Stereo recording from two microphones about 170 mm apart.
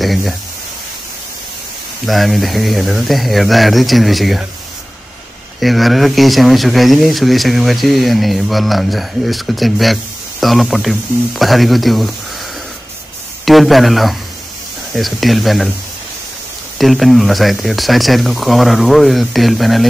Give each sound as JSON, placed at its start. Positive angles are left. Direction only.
{"t": 0.0, "sound": "a sound", "side_deg": 0}
{"t": 2.0, "sound": "speech", "side_deg": 0}
{"t": 5.6, "sound": "speech", "side_deg": 0}
{"t": 13.5, "sound": "speech", "side_deg": 0}
{"t": 16.7, "sound": "speech", "side_deg": 0}